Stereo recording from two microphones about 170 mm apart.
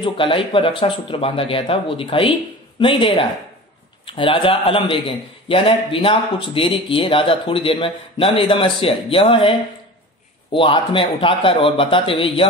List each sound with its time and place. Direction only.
0.0 s speech: 30° left (ahead or behind)
10.5 s speech: 30° left (ahead or behind)